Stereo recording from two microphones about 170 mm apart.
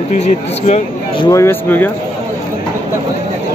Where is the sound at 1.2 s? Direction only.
15° left (ahead or behind).